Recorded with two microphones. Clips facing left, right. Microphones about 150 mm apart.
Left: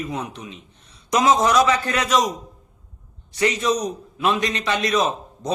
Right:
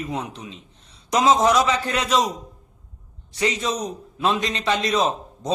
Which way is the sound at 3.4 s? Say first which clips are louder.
Left 3 dB; 25° right (ahead or behind).